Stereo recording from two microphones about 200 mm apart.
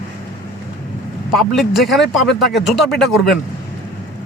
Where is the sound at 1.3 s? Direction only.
Centre (ahead or behind).